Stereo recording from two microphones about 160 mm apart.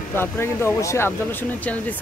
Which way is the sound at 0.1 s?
15° left (ahead or behind).